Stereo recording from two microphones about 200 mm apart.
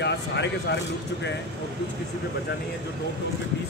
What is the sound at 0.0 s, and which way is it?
Speech, 60° left (ahead or behind).